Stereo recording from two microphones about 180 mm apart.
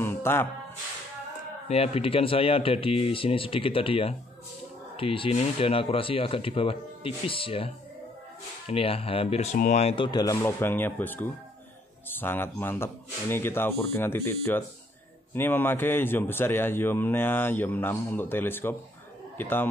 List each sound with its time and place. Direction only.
0.0 s music: 15° left (ahead or behind)
1.7 s a man's voice: 30° left (ahead or behind); by 19.7 s 10° left (ahead or behind)